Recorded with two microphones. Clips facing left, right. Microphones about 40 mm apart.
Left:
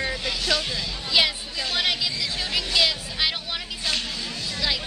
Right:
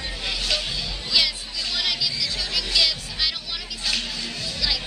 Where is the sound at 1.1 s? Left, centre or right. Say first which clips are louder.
Left 2 dB; left.